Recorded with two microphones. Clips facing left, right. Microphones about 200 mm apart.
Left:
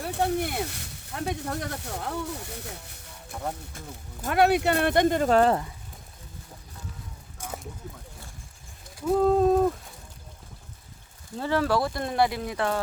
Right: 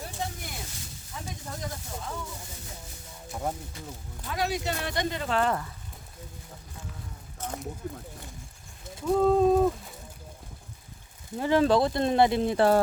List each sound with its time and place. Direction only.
0.0 s speech: 65° left (ahead or behind)
3.8 s speech: 50° left (ahead or behind)
4.3 s speech: 65° left (ahead or behind); by 5.5 s 40° left (ahead or behind)
7.8 s speech: 55° right (ahead or behind)
9.0 s a sound: 5° left (ahead or behind)
11.3 s speech: 15° right (ahead or behind); by 12.8 s 35° right (ahead or behind)